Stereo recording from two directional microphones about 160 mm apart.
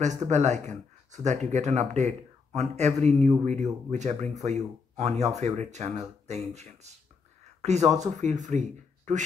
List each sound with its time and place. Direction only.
0.0 s speech: 45° right (ahead or behind)